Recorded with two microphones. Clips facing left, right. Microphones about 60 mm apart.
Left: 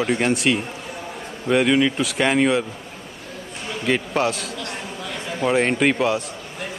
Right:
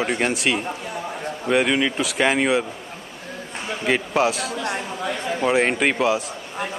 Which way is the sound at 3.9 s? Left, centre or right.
Centre.